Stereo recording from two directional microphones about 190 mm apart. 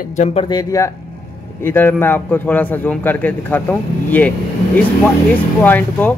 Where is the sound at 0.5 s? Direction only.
20° left (ahead or behind).